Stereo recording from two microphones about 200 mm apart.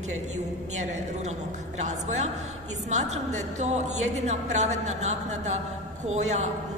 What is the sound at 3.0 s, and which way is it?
A woman's voice, 35° right (ahead or behind).